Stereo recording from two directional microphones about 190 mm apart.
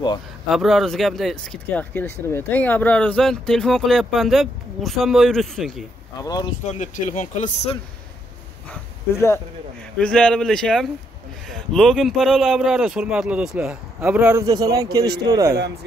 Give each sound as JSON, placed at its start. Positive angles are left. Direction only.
{"t": 0.5, "sound": "speech", "side_deg": 0}
{"t": 6.2, "sound": "speech", "side_deg": 20}
{"t": 6.7, "sound": "speech", "side_deg": 40}
{"t": 9.9, "sound": "speech", "side_deg": 5}